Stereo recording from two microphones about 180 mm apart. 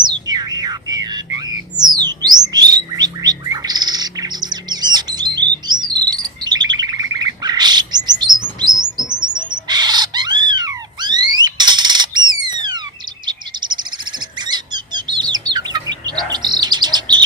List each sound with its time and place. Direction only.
0.0 s music: 25° right (ahead or behind)
2.5 s bird: 20° right (ahead or behind)